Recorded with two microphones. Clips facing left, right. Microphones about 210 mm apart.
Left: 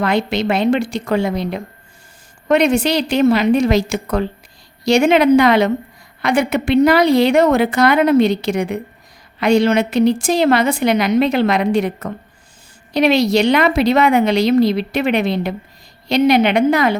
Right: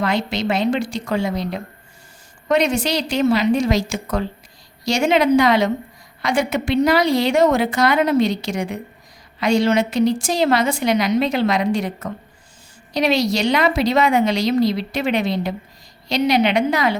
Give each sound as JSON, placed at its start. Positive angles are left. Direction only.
{"t": 0.0, "sound": "a woman's voice", "side_deg": 60}